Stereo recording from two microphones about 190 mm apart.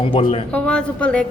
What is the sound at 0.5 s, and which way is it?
Speech, 5° left (ahead or behind).